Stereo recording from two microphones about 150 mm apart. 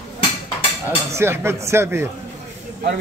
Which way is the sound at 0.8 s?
15° right (ahead or behind).